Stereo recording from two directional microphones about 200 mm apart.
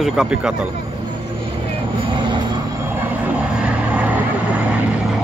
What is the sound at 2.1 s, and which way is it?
Vehicle, 25° right (ahead or behind).